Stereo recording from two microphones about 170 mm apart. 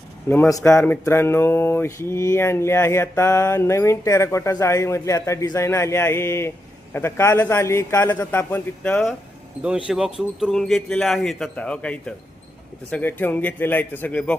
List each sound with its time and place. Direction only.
0.3 s mantra: 15° left (ahead or behind)
9.6 s speech: 5° right (ahead or behind)
12.9 s mantra: 10° left (ahead or behind)